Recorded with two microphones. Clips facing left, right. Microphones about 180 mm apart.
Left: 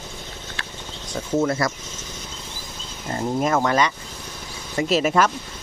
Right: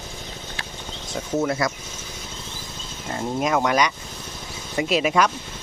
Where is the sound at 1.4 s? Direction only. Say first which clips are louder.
Left 2 dB; 5° right (ahead or behind).